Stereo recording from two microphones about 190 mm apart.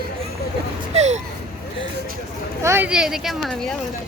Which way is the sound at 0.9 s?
35° right (ahead or behind).